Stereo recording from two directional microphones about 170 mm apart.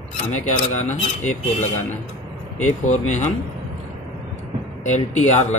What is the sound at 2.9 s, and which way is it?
Speech, 45° left (ahead or behind).